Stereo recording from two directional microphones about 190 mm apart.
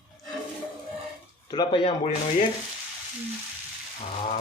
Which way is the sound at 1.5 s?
25° left (ahead or behind).